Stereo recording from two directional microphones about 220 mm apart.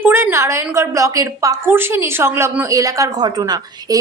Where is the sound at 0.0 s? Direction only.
10° right (ahead or behind).